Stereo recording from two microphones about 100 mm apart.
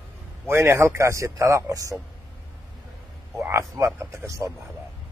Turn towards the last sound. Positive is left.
turn(degrees=-30)  # may be behind; listen again after turning